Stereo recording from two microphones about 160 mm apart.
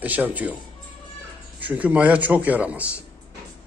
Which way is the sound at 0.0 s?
10° right (ahead or behind).